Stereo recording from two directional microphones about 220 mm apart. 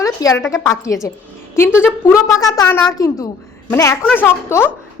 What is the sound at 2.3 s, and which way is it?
A woman's voice, 15° left (ahead or behind).